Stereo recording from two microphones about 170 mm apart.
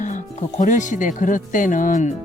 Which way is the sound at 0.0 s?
45° left (ahead or behind).